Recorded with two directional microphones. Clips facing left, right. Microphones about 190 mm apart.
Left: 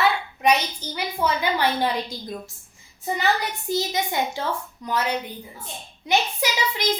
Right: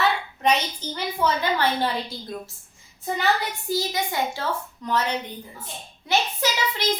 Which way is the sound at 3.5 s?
20° left (ahead or behind).